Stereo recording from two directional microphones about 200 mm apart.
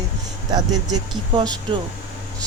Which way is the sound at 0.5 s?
20° right (ahead or behind).